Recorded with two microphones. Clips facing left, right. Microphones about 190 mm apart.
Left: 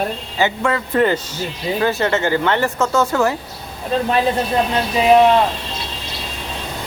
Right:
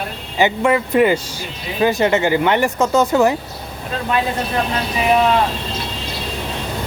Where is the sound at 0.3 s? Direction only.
15° right (ahead or behind).